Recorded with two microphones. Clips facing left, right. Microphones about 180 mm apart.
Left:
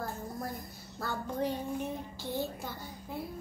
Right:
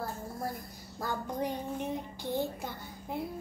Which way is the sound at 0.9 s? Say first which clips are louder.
Even; 15° right (ahead or behind).